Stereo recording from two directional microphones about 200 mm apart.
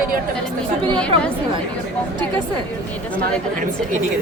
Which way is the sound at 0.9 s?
5° left (ahead or behind).